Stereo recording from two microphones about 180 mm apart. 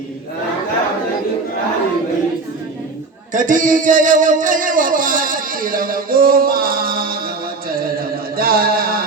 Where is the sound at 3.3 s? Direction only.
45° right (ahead or behind).